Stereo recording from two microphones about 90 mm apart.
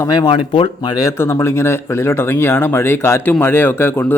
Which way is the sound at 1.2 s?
30° left (ahead or behind).